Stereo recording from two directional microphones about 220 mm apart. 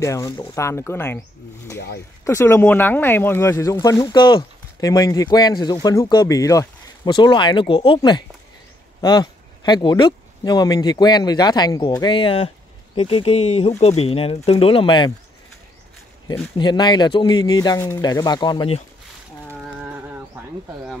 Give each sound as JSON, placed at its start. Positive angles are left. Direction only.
{"t": 0.0, "sound": "speech", "side_deg": 15}
{"t": 2.2, "sound": "speech", "side_deg": 10}
{"t": 16.5, "sound": "speech", "side_deg": 20}
{"t": 19.8, "sound": "bird", "side_deg": -10}